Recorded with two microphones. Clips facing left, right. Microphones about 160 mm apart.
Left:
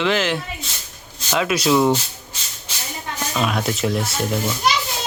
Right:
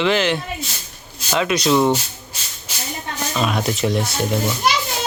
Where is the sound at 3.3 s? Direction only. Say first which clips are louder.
Right 1 dB; centre (ahead or behind).